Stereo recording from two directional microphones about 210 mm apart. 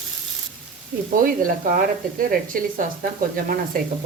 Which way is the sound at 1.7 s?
40° right (ahead or behind).